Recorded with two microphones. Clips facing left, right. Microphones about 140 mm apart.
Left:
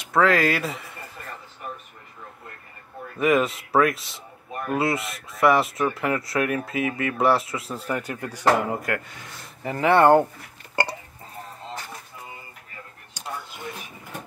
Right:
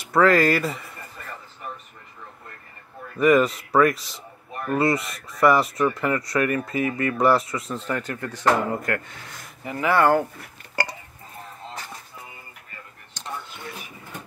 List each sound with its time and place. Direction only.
0.1 s speech: centre (ahead or behind)
3.2 s speech: centre (ahead or behind)
9.7 s speech: 30° left (ahead or behind)
13.1 s a sound: 10° left (ahead or behind)